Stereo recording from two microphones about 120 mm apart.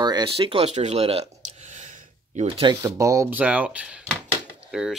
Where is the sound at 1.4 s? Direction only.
90° right.